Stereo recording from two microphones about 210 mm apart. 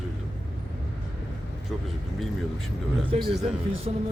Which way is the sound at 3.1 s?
30° right (ahead or behind).